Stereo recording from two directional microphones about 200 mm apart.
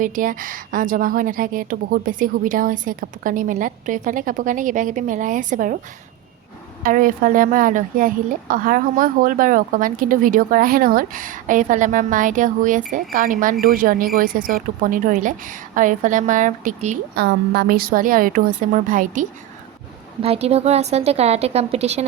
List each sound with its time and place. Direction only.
0.0 s a woman's voice: 40° right (ahead or behind)
6.8 s a woman's voice: 45° right (ahead or behind)
17.2 s a woman's voice: 50° right (ahead or behind); by 22.0 s 35° right (ahead or behind)